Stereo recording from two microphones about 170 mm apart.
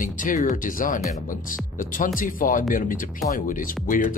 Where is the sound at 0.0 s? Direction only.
50° left (ahead or behind).